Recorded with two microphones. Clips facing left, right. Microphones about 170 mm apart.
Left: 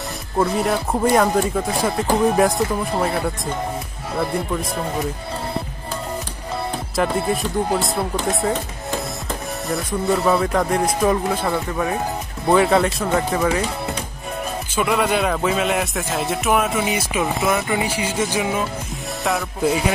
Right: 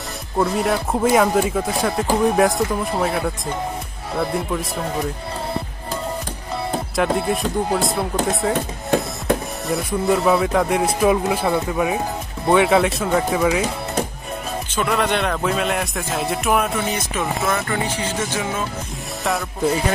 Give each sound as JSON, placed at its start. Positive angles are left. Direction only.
{"t": 0.4, "sound": "speech", "side_deg": 0}
{"t": 7.0, "sound": "speech", "side_deg": 0}
{"t": 8.5, "sound": "music", "side_deg": -65}
{"t": 9.7, "sound": "speech", "side_deg": 0}
{"t": 14.8, "sound": "speech", "side_deg": 5}
{"t": 17.6, "sound": "music", "side_deg": 10}
{"t": 19.2, "sound": "speech", "side_deg": 0}